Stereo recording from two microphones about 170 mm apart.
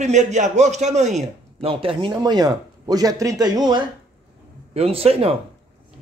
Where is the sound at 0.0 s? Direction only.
45° right (ahead or behind).